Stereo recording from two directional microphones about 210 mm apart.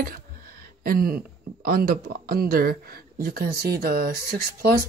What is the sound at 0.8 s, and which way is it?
Speech, 45° right (ahead or behind).